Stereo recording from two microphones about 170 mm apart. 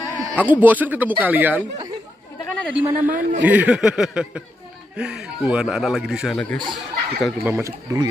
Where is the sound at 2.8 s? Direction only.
10° right (ahead or behind).